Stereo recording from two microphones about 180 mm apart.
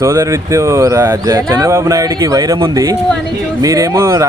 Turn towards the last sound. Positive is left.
turn(degrees=-15)  # may be behind; listen again after turning